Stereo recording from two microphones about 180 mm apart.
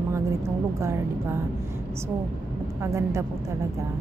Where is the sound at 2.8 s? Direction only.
15° right (ahead or behind).